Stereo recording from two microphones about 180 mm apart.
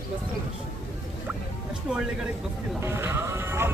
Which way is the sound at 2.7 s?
15° right (ahead or behind).